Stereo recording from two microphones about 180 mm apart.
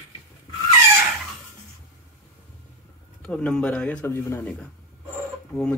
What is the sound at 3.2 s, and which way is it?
Speech, 5° left (ahead or behind).